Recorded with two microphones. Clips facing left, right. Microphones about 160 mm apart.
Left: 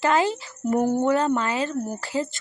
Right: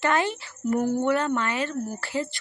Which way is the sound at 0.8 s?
60° left (ahead or behind).